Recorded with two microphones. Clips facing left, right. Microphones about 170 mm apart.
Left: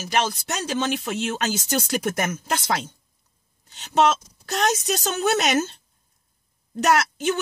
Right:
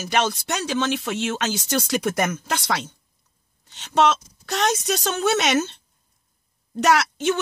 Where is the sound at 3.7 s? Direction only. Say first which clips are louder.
Even; 5° left (ahead or behind).